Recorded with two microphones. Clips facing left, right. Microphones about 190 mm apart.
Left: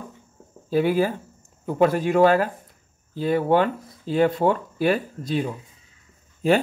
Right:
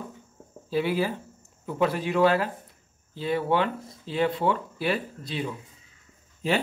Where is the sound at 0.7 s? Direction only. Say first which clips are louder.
Left 5 dB; 45° left (ahead or behind).